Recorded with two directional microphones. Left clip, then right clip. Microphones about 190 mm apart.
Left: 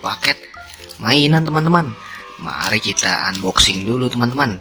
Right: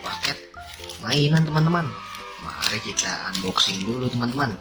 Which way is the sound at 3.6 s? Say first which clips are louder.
Left 8 dB; 55° left (ahead or behind).